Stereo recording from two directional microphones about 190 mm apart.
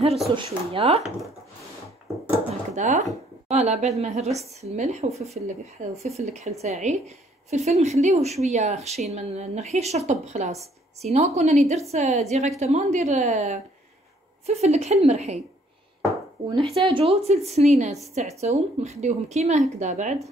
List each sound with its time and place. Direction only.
0.4 s speech: 30° right (ahead or behind)
2.7 s a woman's voice: 40° right (ahead or behind)
16.1 s chopping: 20° right (ahead or behind)
16.7 s speech: 30° right (ahead or behind)